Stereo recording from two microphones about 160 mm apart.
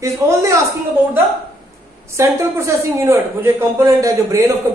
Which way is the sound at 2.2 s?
20° right (ahead or behind).